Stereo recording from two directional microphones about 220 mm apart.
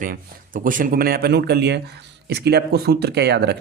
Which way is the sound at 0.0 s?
35° right (ahead or behind).